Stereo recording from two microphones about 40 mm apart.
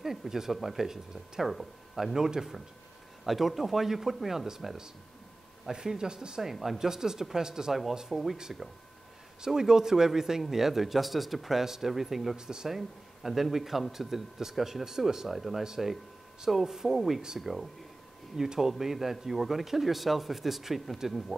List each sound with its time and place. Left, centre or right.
0.0 s a man's voice: centre
2.1 s a man's voice: centre
6.5 s a man's voice: centre
9.4 s a man's voice: centre
12.4 s a man's voice: centre
12.6 s a man's voice: centre
15.6 s a man's voice: centre